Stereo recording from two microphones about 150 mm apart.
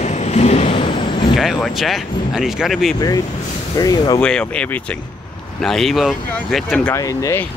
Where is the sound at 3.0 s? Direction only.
25° left (ahead or behind).